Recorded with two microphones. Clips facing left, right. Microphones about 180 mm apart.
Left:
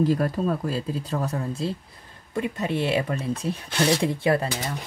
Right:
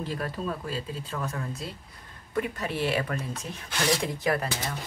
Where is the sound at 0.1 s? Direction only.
40° left (ahead or behind).